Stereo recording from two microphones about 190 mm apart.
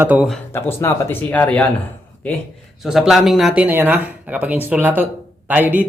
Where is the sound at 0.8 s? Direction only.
15° left (ahead or behind).